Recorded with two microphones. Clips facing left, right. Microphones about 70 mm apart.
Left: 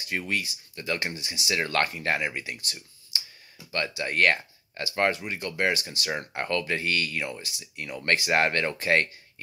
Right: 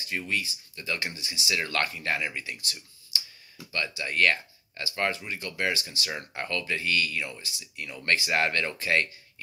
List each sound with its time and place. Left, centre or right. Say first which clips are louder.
0.0 s speech: left 1 dB; left
1.5 s speech: left 3 dB; left
3.7 s speech: left 2 dB; left
6.0 s speech: left 5 dB; left